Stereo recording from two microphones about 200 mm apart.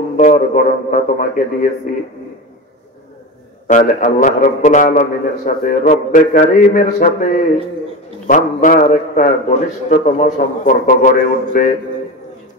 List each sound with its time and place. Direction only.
0.2 s a man's voice: 40° left (ahead or behind)
3.6 s a man's voice: 40° left (ahead or behind)